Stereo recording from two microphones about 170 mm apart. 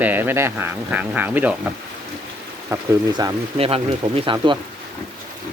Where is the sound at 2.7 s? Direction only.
15° right (ahead or behind).